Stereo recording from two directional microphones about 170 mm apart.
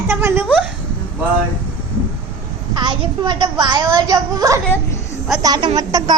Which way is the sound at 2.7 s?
25° right (ahead or behind).